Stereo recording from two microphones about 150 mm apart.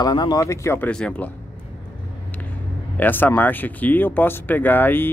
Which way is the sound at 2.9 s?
10° left (ahead or behind).